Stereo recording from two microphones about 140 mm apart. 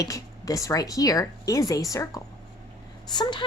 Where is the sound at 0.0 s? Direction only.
25° left (ahead or behind).